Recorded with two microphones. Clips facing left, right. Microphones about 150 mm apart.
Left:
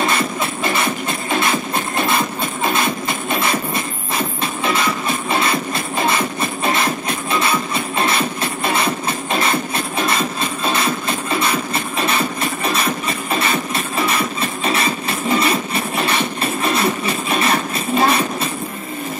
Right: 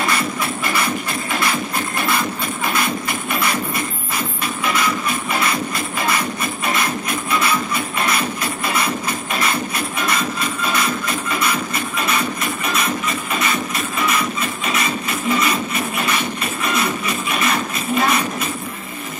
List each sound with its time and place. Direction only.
0.7 s music: 25° left (ahead or behind)